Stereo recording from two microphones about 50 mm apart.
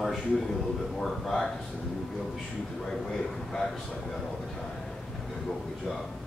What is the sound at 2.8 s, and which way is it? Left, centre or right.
Speech, centre.